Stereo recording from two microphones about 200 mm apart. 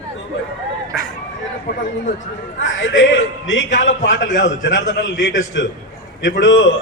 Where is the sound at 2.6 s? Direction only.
70° left (ahead or behind).